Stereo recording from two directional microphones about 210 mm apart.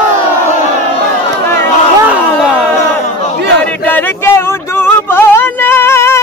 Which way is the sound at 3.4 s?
55° right (ahead or behind).